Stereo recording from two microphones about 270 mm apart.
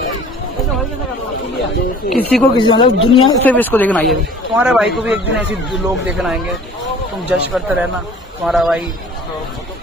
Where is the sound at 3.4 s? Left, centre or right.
Centre.